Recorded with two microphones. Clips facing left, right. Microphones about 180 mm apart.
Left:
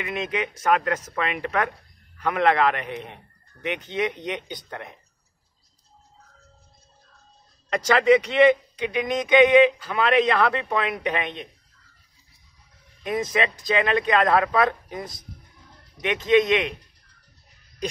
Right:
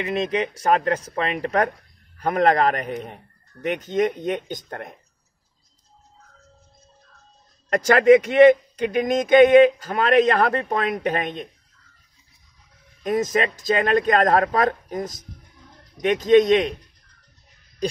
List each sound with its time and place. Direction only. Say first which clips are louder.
0.0 s a man's voice: right 5 dB; 35° right (ahead or behind)
7.7 s a man's voice: right 4 dB; 50° right (ahead or behind)
13.0 s a man's voice: right 3 dB; 45° right (ahead or behind)